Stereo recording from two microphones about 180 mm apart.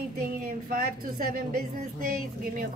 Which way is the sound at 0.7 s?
50° right (ahead or behind).